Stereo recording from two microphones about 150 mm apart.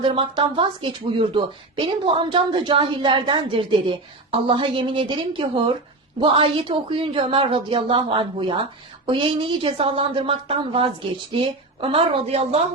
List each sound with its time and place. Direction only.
0.0 s speech: 35° right (ahead or behind)